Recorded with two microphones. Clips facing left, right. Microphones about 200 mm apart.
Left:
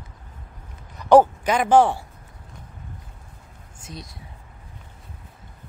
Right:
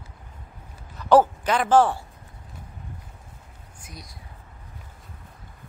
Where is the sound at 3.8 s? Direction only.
25° left (ahead or behind).